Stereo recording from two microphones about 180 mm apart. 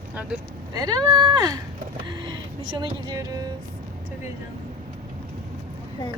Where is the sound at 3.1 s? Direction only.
20° right (ahead or behind).